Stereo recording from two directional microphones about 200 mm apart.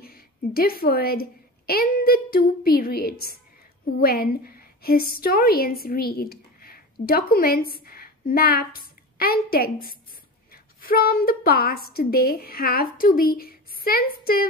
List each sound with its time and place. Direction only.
0.0 s a woman's voice: 50° left (ahead or behind)